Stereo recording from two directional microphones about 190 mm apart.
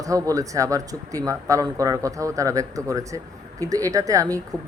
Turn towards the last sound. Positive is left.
turn(degrees=-20)  # may be behind; listen again after turning